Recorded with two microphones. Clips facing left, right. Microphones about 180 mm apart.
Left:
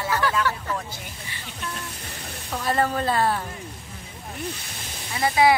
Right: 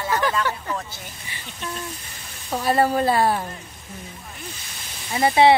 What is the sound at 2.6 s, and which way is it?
Speech, 10° right (ahead or behind).